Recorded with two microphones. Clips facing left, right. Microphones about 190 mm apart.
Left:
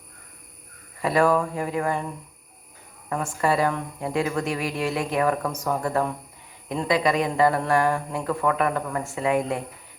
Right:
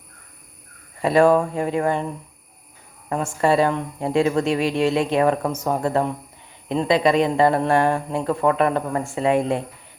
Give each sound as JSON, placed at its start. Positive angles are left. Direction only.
{"t": 1.0, "sound": "a woman's voice", "side_deg": -25}
{"t": 3.1, "sound": "a woman's voice", "side_deg": -25}